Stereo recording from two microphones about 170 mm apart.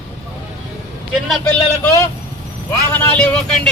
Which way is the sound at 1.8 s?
15° left (ahead or behind).